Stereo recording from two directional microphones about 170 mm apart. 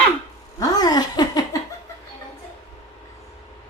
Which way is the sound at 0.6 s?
25° left (ahead or behind).